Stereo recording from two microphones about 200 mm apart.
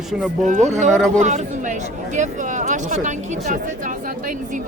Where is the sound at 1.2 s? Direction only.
35° right (ahead or behind).